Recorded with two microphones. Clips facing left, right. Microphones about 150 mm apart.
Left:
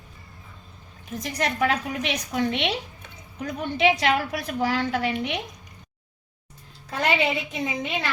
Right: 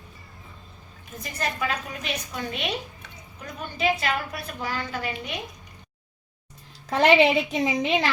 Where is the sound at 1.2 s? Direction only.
75° left (ahead or behind).